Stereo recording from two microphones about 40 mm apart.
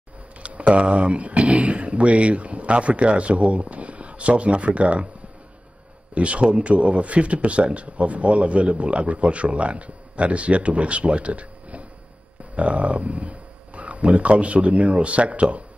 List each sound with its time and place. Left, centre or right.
0.4 s speech: right
6.1 s speech: right